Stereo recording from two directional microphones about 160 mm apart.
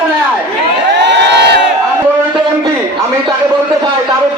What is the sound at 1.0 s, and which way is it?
Crowd, 90° right.